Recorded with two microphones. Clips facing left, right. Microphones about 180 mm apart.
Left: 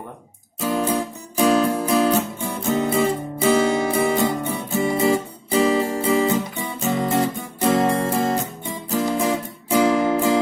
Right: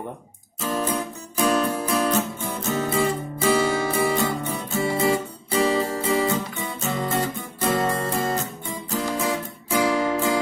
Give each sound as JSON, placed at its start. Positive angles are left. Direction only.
{"t": 0.6, "sound": "music", "side_deg": 10}
{"t": 0.9, "sound": "music", "side_deg": 25}
{"t": 1.9, "sound": "music", "side_deg": 10}